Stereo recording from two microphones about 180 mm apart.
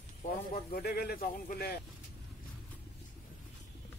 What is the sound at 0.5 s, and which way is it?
Speech, 55° left (ahead or behind).